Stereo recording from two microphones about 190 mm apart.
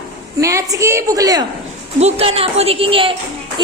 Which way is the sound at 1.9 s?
35° right (ahead or behind).